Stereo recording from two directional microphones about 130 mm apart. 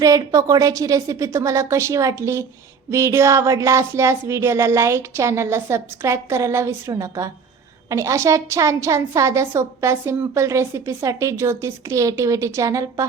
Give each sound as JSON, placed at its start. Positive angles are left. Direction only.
{"t": 0.0, "sound": "a woman's voice", "side_deg": -25}